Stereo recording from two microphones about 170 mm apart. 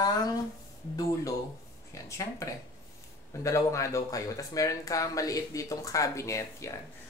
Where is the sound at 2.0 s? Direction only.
20° left (ahead or behind).